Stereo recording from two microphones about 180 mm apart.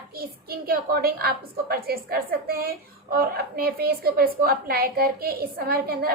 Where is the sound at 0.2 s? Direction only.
55° right (ahead or behind).